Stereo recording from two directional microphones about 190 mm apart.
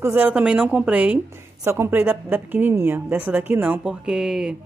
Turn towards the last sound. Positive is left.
turn(degrees=-5)  # may be behind; listen again after turning